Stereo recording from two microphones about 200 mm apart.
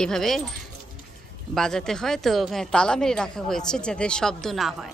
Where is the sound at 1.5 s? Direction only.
5° left (ahead or behind).